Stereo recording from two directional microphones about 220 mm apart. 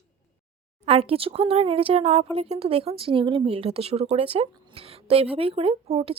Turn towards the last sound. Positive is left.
turn(degrees=-25)  # may be behind; listen again after turning